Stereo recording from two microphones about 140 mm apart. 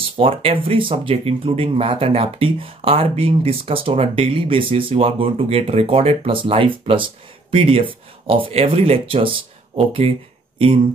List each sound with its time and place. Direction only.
0.0 s speech: 40° right (ahead or behind)